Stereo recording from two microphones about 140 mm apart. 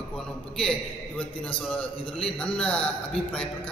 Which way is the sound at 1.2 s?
10° left (ahead or behind).